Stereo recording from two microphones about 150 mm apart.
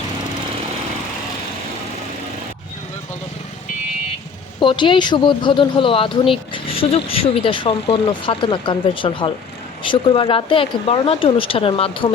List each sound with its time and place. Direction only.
4.6 s speech: 35° left (ahead or behind)